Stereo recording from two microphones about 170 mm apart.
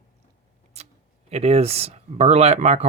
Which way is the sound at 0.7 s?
40° right (ahead or behind).